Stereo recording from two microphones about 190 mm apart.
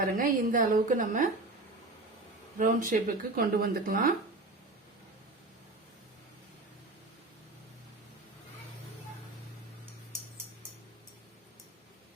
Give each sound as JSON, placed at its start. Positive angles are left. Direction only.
{"t": 0.2, "sound": "speech", "side_deg": -45}
{"t": 2.6, "sound": "speech", "side_deg": -45}